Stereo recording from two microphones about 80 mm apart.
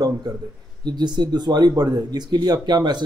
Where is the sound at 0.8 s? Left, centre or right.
Right.